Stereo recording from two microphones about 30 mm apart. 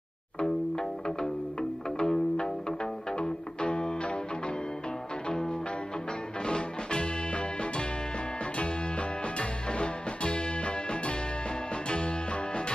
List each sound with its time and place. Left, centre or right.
0.4 s music: left
6.4 s music: left